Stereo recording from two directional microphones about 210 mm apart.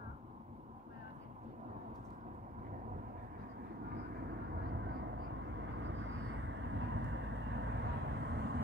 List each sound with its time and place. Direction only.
5.8 s vehicle: 60° right (ahead or behind)